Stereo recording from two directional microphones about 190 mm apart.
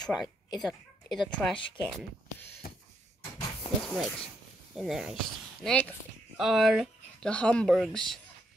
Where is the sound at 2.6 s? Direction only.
55° left (ahead or behind).